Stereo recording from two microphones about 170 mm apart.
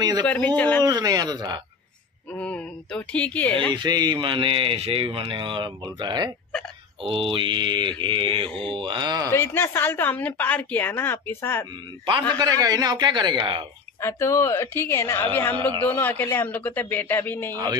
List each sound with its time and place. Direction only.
0.2 s a woman's voice: 10° left (ahead or behind)
0.8 s speech: 25° right (ahead or behind)
2.3 s a woman's voice: 5° left (ahead or behind)
3.7 s speech: 25° right (ahead or behind)
9.3 s a woman's voice: 15° left (ahead or behind)
12.4 s speech: 20° right (ahead or behind)
14.0 s a woman's voice: 15° left (ahead or behind)